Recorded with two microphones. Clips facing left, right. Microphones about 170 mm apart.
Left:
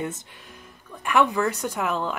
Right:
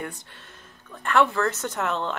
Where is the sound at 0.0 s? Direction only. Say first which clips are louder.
Left 4 dB; 20° left (ahead or behind).